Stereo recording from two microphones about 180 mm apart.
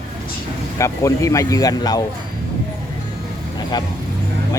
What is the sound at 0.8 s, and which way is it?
Speech, 15° left (ahead or behind).